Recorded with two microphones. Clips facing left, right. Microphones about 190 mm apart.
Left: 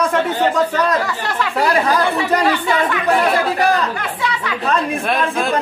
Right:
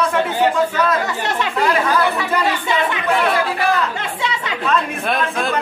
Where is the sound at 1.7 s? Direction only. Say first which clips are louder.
Left 2 dB; 35° left (ahead or behind).